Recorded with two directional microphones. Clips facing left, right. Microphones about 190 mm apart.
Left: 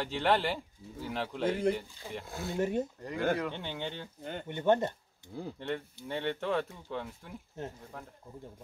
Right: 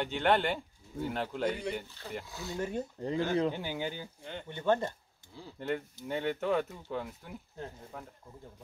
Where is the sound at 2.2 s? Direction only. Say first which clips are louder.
Left 4 dB; 55° left (ahead or behind).